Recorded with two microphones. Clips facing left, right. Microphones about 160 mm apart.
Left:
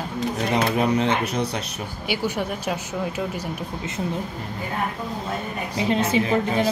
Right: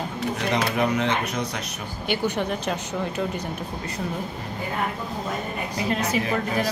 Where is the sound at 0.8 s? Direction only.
30° left (ahead or behind).